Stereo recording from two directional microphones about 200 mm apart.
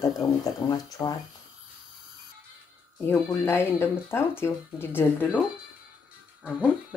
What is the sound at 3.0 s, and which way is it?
Speech, 10° left (ahead or behind).